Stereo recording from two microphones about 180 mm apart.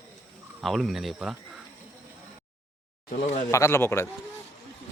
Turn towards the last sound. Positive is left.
turn(degrees=15)  # may be behind; listen again after turning